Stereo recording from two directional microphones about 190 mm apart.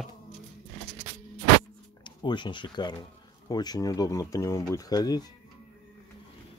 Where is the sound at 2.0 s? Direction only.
25° left (ahead or behind).